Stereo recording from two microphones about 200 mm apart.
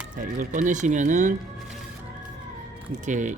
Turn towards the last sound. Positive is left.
turn(degrees=-40)  # may be behind; listen again after turning